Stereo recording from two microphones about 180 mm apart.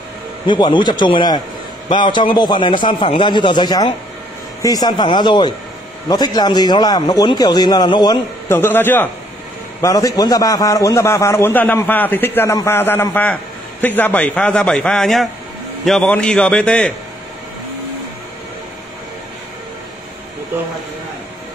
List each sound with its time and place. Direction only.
0.5 s a man's voice: 25° left (ahead or behind)
8.5 s a man's voice: 10° left (ahead or behind)